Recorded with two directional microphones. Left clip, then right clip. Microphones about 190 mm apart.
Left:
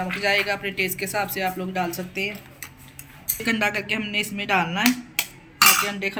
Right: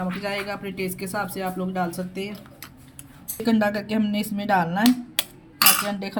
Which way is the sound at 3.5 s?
45° right (ahead or behind).